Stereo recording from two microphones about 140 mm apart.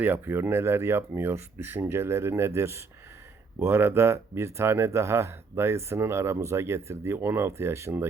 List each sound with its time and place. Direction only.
0.0 s speech: 15° right (ahead or behind)